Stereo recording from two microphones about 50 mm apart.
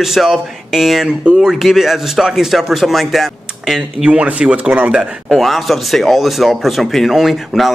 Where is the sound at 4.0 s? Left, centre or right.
Right.